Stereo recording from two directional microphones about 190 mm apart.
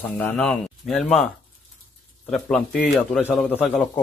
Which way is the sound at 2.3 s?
5° left (ahead or behind).